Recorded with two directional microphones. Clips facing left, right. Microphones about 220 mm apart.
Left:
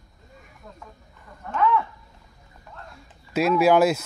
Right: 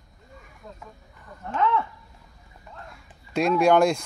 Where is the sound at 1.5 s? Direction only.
25° right (ahead or behind).